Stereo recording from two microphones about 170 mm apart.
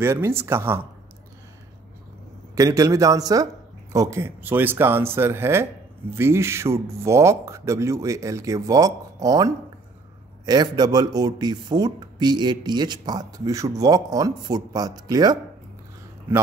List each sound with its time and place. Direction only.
0.0 s speech: 15° right (ahead or behind)
2.5 s speech: 20° right (ahead or behind)